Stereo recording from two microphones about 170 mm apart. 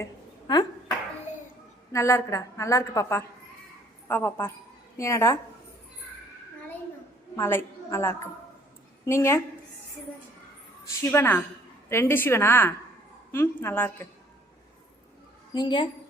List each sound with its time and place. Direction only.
0.0 s a sound: 25° left (ahead or behind)
1.9 s a woman's voice: 15° left (ahead or behind)
7.3 s a woman's voice: 15° left (ahead or behind)
11.1 s a woman's voice: 10° left (ahead or behind)
15.5 s a woman's voice: 30° left (ahead or behind)